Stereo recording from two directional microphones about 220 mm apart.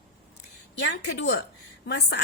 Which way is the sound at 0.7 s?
55° left (ahead or behind).